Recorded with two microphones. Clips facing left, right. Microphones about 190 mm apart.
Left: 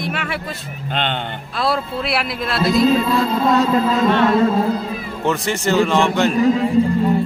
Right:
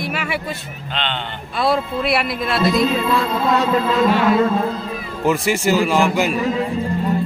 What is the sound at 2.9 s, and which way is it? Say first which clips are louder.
Music: left 2 dB; 40° left (ahead or behind).